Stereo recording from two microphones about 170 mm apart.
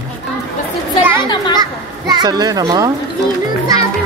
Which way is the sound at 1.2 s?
25° left (ahead or behind).